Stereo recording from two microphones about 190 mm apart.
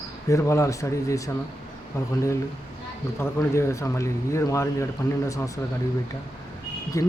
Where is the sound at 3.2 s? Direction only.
15° left (ahead or behind).